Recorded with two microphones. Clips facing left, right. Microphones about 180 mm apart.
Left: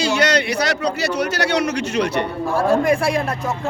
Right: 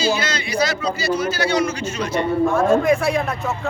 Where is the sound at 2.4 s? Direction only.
35° left (ahead or behind).